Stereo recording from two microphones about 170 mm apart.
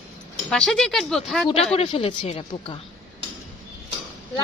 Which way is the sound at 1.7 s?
35° left (ahead or behind).